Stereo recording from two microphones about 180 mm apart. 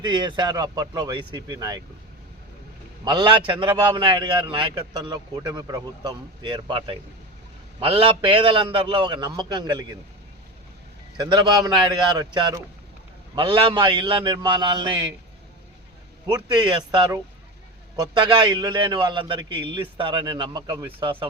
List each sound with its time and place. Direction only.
0.0 s a man's voice: 25° right (ahead or behind)
3.0 s a man's voice: 25° right (ahead or behind)
11.2 s a man's voice: 20° right (ahead or behind)
16.2 s a man's voice: 25° right (ahead or behind)